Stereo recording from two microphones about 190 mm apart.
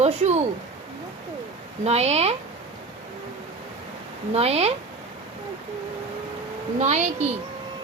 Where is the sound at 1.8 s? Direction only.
35° right (ahead or behind).